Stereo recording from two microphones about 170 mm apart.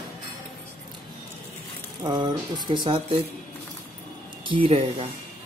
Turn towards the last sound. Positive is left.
turn(degrees=-30)  # may be behind; listen again after turning